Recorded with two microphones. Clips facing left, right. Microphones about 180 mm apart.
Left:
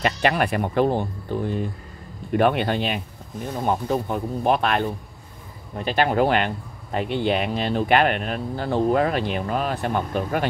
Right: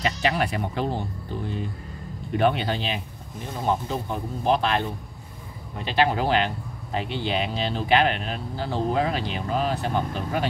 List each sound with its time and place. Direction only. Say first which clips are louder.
0.0 s speech: left 3 dB; 60° left (ahead or behind)
5.9 s speech: left 3 dB; 50° left (ahead or behind)